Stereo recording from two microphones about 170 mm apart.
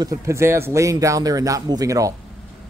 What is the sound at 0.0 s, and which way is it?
A man's voice, 20° right (ahead or behind).